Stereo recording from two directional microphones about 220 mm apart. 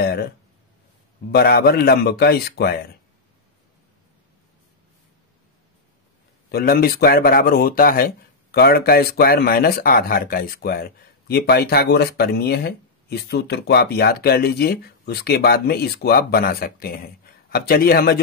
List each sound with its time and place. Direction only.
0.0 s speech: 45° left (ahead or behind)
1.3 s speech: 45° left (ahead or behind)
6.5 s speech: 45° left (ahead or behind)